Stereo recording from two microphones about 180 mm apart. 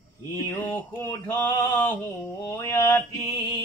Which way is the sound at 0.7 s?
15° left (ahead or behind).